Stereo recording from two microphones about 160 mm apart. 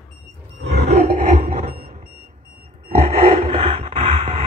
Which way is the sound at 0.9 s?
50° right (ahead or behind).